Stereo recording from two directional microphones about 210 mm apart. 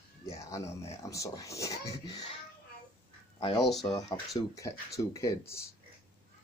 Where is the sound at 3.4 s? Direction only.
25° left (ahead or behind).